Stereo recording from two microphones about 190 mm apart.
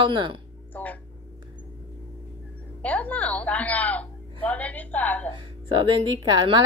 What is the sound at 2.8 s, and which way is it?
A woman's voice, 10° left (ahead or behind).